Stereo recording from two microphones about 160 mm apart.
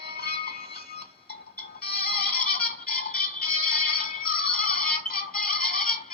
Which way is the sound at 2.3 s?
65° left (ahead or behind).